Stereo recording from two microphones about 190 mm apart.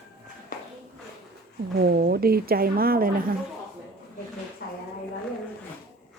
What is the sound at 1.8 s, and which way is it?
A woman's voice, 55° right (ahead or behind).